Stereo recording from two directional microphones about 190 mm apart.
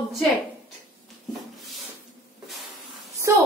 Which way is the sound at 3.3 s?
15° right (ahead or behind).